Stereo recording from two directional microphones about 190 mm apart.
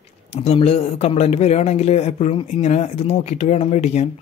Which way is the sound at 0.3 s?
35° left (ahead or behind).